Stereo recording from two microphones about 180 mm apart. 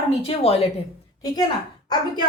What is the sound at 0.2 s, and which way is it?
Speech, 35° left (ahead or behind).